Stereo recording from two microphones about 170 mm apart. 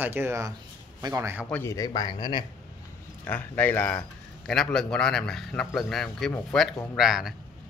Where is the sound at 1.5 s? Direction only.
15° left (ahead or behind).